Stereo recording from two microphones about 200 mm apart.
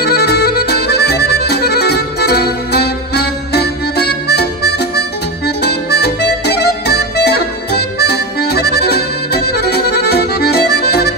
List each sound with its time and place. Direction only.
0.0 s music: 55° left (ahead or behind)